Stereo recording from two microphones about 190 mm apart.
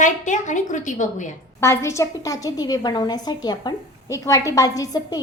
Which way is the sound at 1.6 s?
15° left (ahead or behind).